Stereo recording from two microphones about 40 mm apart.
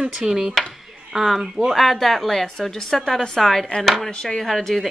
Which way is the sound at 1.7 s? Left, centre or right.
Centre.